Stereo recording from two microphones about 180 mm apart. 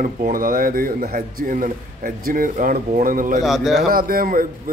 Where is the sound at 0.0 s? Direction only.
50° right (ahead or behind).